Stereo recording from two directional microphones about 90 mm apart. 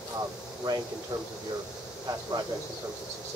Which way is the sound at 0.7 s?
50° right (ahead or behind).